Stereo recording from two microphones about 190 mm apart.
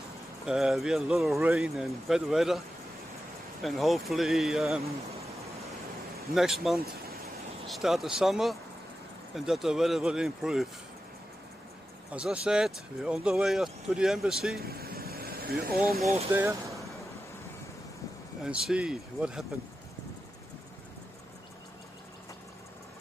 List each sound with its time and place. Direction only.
0.5 s speech: centre (ahead or behind)
3.6 s speech: centre (ahead or behind)
6.3 s speech: centre (ahead or behind)
12.1 s speech: 5° right (ahead or behind)
14.6 s vehicle: 55° right (ahead or behind)
15.6 s speech: 55° right (ahead or behind)
16.3 s speech: 15° right (ahead or behind)
18.4 s speech: 5° right (ahead or behind)